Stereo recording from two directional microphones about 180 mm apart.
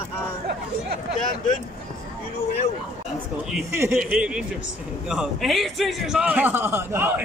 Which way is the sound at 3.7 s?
10° right (ahead or behind).